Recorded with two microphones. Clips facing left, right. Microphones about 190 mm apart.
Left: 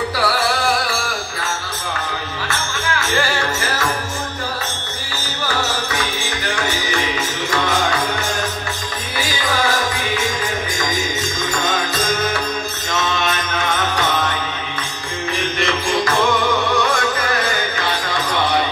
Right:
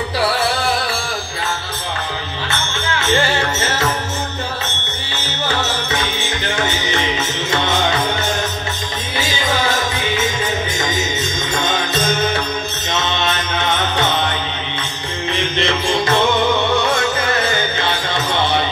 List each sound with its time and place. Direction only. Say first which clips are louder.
2.9 s music: right 3 dB; 25° right (ahead or behind)
5.1 s music: right 2 dB; 25° right (ahead or behind)
9.2 s music: right 1 dB; 25° right (ahead or behind)
13.1 s music: right 1 dB; 25° right (ahead or behind)
15.3 s music: right 2 dB; 25° right (ahead or behind)